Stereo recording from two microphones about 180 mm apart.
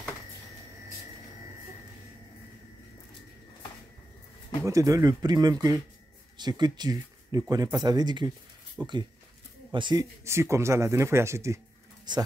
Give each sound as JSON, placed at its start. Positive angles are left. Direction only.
{"t": 4.6, "sound": "speech", "side_deg": -20}
{"t": 8.8, "sound": "speech", "side_deg": -10}
{"t": 9.7, "sound": "speech", "side_deg": -25}